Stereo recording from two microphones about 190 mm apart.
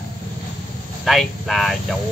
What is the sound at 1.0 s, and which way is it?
Speech, centre (ahead or behind).